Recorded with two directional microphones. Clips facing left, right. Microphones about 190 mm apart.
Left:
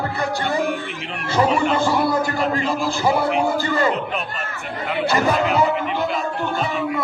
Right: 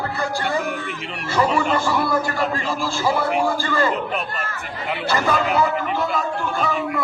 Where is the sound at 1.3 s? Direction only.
25° left (ahead or behind).